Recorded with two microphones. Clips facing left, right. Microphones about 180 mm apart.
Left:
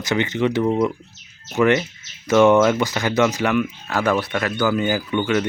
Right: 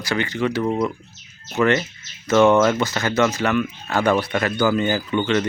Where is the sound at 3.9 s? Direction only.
Centre (ahead or behind).